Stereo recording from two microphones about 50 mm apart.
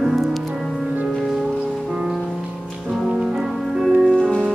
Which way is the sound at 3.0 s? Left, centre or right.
Centre.